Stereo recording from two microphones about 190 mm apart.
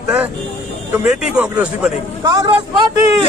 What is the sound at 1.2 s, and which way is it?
Speech, 5° right (ahead or behind).